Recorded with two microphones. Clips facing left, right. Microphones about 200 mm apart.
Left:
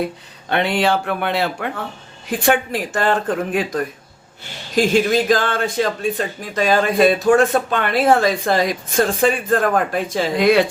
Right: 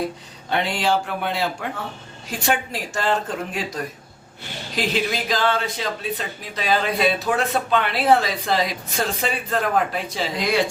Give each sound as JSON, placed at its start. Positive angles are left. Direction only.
{"t": 0.5, "sound": "speech", "side_deg": 60}